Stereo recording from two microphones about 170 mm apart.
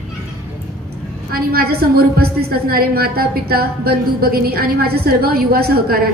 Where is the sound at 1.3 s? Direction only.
60° right (ahead or behind).